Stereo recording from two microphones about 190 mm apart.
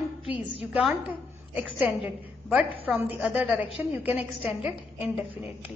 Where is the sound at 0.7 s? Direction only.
5° right (ahead or behind).